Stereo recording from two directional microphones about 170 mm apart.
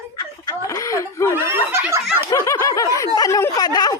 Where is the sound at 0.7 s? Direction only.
15° left (ahead or behind).